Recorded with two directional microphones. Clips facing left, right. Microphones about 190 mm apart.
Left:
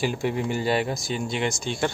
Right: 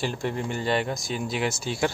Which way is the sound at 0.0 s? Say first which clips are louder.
Left 3 dB; 5° left (ahead or behind).